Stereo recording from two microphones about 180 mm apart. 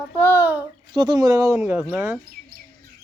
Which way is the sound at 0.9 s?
25° right (ahead or behind).